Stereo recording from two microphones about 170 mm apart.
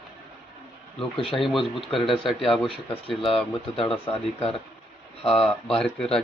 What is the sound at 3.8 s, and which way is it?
Speech, 35° left (ahead or behind).